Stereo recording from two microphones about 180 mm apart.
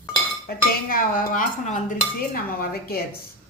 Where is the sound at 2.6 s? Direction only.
60° left (ahead or behind).